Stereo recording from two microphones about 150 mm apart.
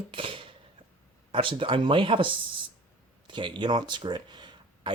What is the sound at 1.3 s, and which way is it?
Speech, 35° right (ahead or behind).